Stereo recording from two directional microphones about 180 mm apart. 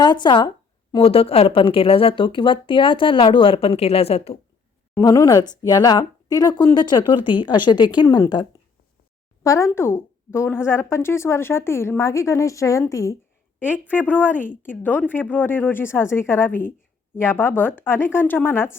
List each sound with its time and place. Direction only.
0.0 s speech: 25° left (ahead or behind)
4.9 s speech: 20° left (ahead or behind)
7.2 s speech: 10° right (ahead or behind)
7.4 s speech: 25° left (ahead or behind)